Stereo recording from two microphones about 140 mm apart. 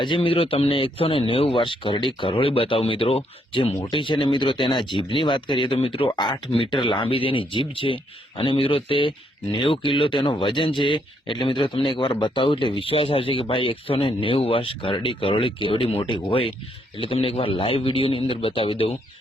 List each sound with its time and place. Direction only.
0.0 s speech: 40° left (ahead or behind)